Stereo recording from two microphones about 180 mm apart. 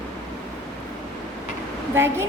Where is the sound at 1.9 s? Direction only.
15° right (ahead or behind).